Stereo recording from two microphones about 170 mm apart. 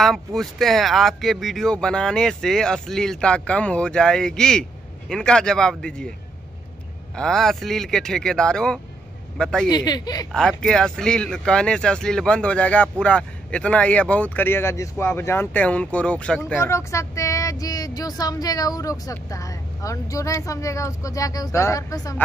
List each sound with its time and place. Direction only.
0.0 s speech: centre (ahead or behind)
7.2 s speech: 5° left (ahead or behind)
9.7 s speech: 25° left (ahead or behind)
10.3 s speech: 5° left (ahead or behind); by 22.2 s 20° left (ahead or behind)